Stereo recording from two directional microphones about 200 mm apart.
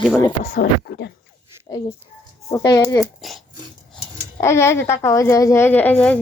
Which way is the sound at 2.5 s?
15° left (ahead or behind).